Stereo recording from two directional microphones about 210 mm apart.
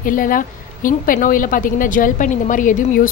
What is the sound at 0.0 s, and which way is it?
A woman's voice, 40° left (ahead or behind).